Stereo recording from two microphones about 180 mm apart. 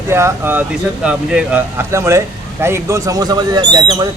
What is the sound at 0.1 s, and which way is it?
A man's voice, 15° right (ahead or behind).